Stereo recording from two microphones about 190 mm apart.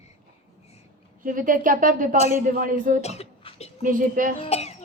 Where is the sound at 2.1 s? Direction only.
35° left (ahead or behind).